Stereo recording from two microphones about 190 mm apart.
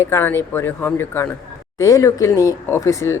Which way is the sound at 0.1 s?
10° left (ahead or behind).